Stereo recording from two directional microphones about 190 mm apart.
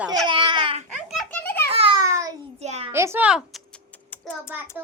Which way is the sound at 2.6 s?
35° right (ahead or behind).